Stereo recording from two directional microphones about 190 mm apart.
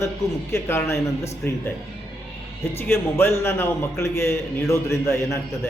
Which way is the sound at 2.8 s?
10° left (ahead or behind).